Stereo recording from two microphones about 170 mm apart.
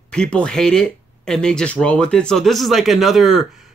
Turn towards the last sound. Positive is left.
turn(degrees=0)  # may be behind; listen again after turning